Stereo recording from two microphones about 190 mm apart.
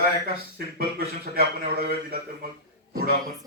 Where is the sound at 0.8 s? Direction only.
55° right (ahead or behind).